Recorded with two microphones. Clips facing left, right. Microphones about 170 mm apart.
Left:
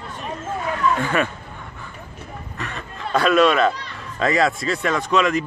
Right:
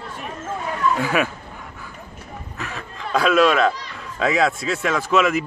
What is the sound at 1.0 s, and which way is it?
Speech, 5° right (ahead or behind).